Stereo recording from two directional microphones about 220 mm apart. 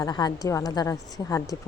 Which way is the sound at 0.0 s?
20° left (ahead or behind).